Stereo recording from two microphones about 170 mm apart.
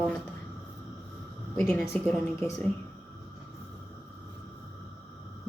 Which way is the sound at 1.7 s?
5° left (ahead or behind).